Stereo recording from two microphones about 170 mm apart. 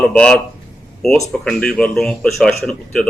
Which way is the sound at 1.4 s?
5° left (ahead or behind).